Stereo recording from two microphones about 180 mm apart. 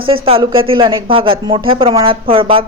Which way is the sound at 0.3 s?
30° right (ahead or behind).